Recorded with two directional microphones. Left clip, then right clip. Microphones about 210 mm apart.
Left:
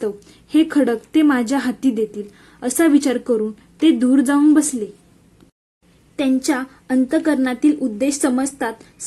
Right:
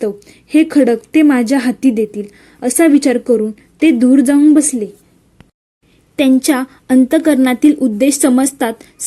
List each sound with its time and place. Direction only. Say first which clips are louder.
0.0 s a woman's voice: right 5 dB; 20° right (ahead or behind)
6.1 s a woman's voice: right 7 dB; 35° right (ahead or behind)